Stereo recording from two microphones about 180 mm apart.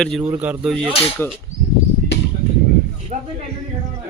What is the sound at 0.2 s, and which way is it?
Speech, 10° right (ahead or behind).